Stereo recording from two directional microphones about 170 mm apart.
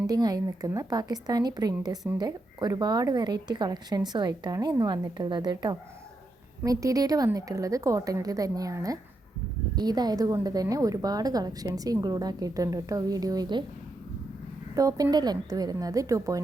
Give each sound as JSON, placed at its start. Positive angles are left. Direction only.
{"t": 0.1, "sound": "a woman's voice", "side_deg": -20}
{"t": 14.8, "sound": "a woman's voice", "side_deg": -20}